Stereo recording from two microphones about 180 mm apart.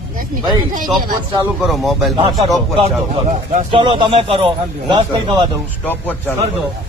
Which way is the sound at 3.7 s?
25° right (ahead or behind).